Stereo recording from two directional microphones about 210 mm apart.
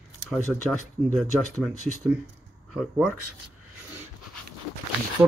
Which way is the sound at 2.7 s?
Centre (ahead or behind).